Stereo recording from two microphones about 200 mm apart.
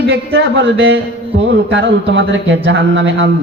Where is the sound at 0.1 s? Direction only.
60° right (ahead or behind).